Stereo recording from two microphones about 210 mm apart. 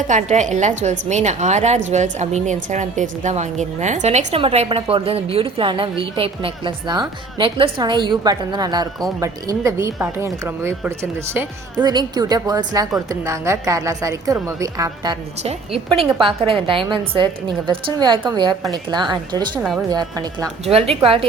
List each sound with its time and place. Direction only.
0.1 s a woman's voice: 35° right (ahead or behind)